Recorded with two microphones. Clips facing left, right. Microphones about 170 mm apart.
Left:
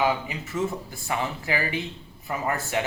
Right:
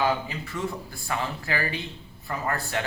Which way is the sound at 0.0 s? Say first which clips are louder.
Left 1 dB; 20° left (ahead or behind).